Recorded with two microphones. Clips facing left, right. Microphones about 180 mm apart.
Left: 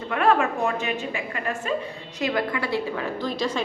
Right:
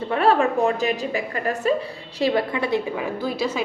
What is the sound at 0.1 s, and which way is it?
A woman's voice, 30° right (ahead or behind).